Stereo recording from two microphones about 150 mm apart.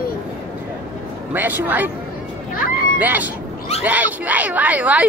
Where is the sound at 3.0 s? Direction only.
10° right (ahead or behind).